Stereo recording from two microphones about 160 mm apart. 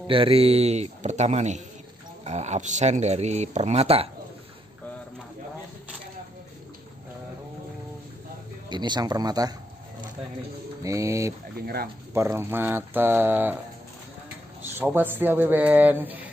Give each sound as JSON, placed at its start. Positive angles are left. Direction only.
{"t": 0.0, "sound": "speech", "side_deg": -35}
{"t": 8.6, "sound": "speech", "side_deg": -30}
{"t": 10.8, "sound": "speech", "side_deg": -20}
{"t": 11.5, "sound": "speech", "side_deg": -75}
{"t": 12.1, "sound": "speech", "side_deg": -15}
{"t": 14.6, "sound": "a sound", "side_deg": -15}
{"t": 15.0, "sound": "speech", "side_deg": -10}